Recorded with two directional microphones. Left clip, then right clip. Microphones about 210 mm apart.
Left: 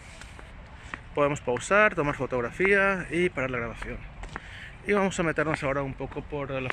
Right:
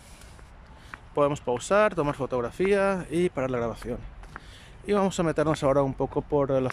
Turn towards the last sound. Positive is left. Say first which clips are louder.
# right 8 dB
turn(degrees=-30)  # may be behind; listen again after turning